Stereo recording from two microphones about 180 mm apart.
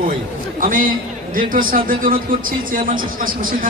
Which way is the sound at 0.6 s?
50° right (ahead or behind).